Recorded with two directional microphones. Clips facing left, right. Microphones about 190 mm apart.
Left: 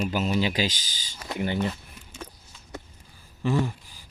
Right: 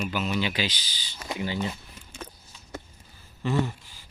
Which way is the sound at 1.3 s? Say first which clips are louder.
Left 3 dB; 55° left (ahead or behind).